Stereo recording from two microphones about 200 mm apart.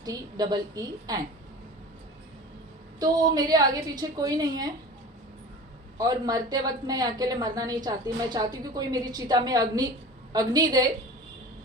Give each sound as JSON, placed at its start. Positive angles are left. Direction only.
{"t": 0.0, "sound": "a woman's voice", "side_deg": -20}
{"t": 3.0, "sound": "a woman's voice", "side_deg": -20}
{"t": 6.0, "sound": "a woman's voice", "side_deg": -20}